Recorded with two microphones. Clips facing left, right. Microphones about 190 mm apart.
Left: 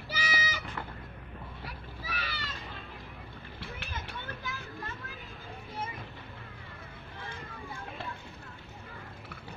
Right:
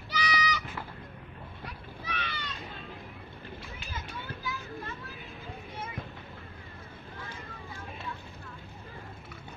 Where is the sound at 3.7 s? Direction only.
65° left (ahead or behind).